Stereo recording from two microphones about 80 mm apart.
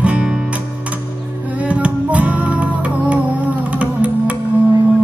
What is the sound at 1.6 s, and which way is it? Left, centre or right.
Music, centre.